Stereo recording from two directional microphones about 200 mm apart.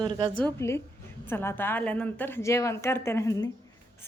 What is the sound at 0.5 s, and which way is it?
A woman's voice, 15° left (ahead or behind).